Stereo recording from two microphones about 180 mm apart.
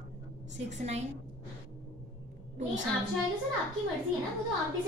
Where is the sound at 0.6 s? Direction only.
40° right (ahead or behind).